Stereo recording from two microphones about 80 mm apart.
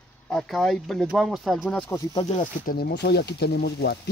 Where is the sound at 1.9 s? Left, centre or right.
Left.